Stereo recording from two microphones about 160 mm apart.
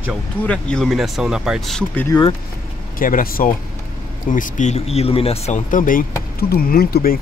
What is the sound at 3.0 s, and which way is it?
Speech, 60° left (ahead or behind).